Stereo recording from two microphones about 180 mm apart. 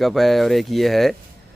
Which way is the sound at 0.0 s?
Centre (ahead or behind).